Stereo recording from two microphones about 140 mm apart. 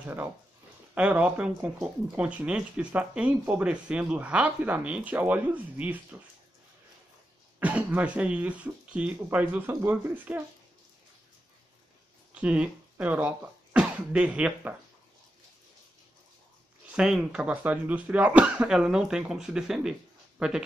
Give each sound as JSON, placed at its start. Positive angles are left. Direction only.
{"t": 0.0, "sound": "speech", "side_deg": -15}
{"t": 7.6, "sound": "speech", "side_deg": -10}
{"t": 12.4, "sound": "speech", "side_deg": -10}
{"t": 16.9, "sound": "speech", "side_deg": -5}